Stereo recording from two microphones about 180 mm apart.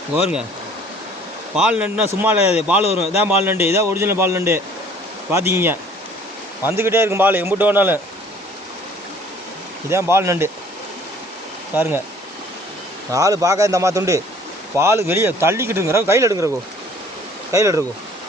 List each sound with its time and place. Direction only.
0.1 s speech: 5° right (ahead or behind)
1.5 s a man's voice: 5° right (ahead or behind)
9.9 s a man's voice: 15° right (ahead or behind)
11.7 s a man's voice: 10° right (ahead or behind)
13.1 s a man's voice: 20° right (ahead or behind)
17.5 s a man's voice: 15° right (ahead or behind)